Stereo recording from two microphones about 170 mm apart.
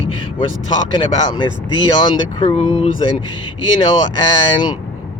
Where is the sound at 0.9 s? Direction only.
25° left (ahead or behind).